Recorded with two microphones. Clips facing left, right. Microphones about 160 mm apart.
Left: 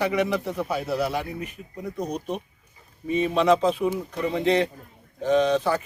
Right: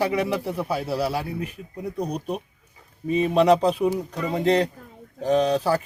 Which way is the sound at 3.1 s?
35° right (ahead or behind).